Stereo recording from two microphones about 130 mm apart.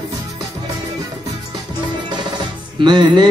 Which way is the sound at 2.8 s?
35° right (ahead or behind).